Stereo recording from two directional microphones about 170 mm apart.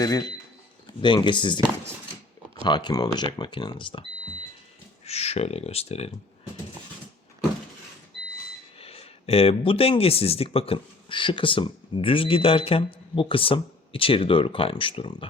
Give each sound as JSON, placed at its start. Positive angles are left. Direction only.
{"t": 0.0, "sound": "speech", "side_deg": 20}
{"t": 2.6, "sound": "speech", "side_deg": 25}
{"t": 5.0, "sound": "speech", "side_deg": 40}
{"t": 8.8, "sound": "speech", "side_deg": 35}